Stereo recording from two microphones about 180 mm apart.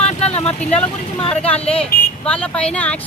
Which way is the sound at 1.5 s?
5° left (ahead or behind).